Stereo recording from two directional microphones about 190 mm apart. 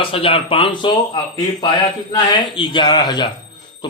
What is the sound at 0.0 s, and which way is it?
A man's voice, 30° left (ahead or behind).